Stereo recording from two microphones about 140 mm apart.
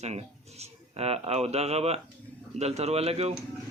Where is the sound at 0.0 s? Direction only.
50° right (ahead or behind).